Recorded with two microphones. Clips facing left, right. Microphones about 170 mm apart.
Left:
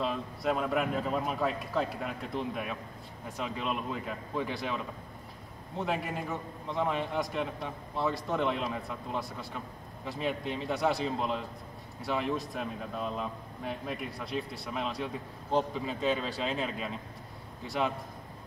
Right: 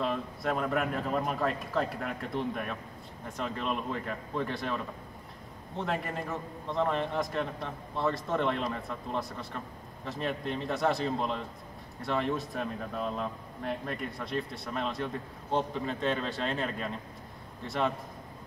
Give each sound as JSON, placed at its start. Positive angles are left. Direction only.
{"t": 0.0, "sound": "a man's voice", "side_deg": 0}
{"t": 5.8, "sound": "a man's voice", "side_deg": 0}